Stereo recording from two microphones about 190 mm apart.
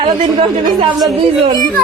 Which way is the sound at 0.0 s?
25° right (ahead or behind).